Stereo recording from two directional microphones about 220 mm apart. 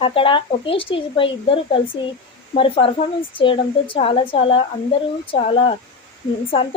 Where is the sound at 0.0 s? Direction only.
25° left (ahead or behind).